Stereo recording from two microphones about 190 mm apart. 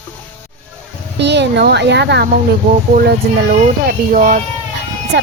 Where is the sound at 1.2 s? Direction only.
65° right (ahead or behind).